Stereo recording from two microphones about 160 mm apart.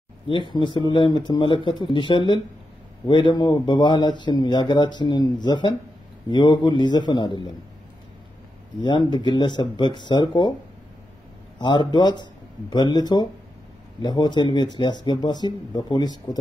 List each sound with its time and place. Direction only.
0.3 s a man's voice: 30° left (ahead or behind)
8.8 s speech: 30° left (ahead or behind)
11.5 s speech: 30° left (ahead or behind)